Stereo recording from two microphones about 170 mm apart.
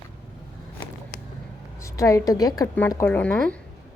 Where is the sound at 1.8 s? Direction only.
20° left (ahead or behind).